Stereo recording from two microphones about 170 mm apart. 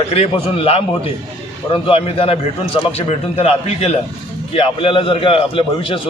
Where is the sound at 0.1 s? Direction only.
35° left (ahead or behind).